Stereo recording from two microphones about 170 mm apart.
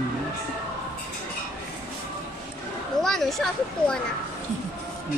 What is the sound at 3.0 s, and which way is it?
Speech, centre (ahead or behind).